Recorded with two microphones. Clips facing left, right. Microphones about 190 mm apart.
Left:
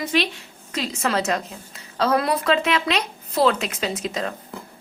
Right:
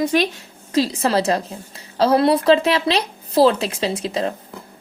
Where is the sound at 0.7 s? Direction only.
35° right (ahead or behind).